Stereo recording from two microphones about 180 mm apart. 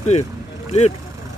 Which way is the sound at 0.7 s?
35° left (ahead or behind).